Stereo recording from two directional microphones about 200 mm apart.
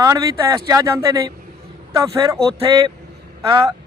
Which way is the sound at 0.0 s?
15° right (ahead or behind).